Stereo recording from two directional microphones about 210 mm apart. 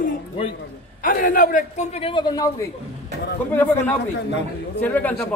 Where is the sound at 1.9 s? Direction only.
25° left (ahead or behind).